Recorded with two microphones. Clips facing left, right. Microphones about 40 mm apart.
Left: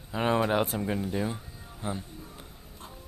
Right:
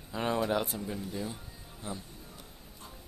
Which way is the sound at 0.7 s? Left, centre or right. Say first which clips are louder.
Left 7 dB; left.